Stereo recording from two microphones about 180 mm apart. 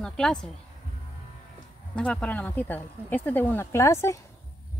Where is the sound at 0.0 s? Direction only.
5° left (ahead or behind).